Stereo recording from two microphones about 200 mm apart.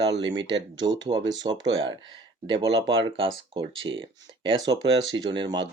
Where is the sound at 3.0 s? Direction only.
25° right (ahead or behind).